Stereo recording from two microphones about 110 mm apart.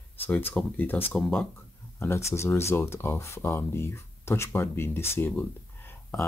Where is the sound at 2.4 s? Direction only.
25° left (ahead or behind).